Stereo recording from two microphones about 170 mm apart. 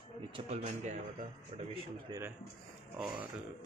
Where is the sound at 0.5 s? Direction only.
40° right (ahead or behind).